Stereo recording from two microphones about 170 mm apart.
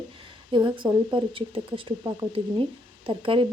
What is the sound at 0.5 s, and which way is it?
Speech, 25° right (ahead or behind).